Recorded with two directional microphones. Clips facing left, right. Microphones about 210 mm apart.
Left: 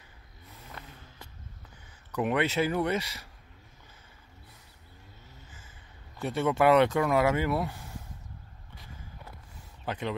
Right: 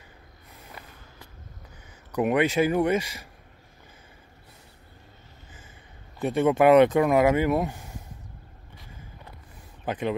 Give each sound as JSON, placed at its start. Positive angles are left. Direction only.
{"t": 0.8, "sound": "a sound", "side_deg": -10}
{"t": 2.1, "sound": "speech", "side_deg": -15}
{"t": 6.1, "sound": "speech", "side_deg": -20}
{"t": 9.8, "sound": "speech", "side_deg": -15}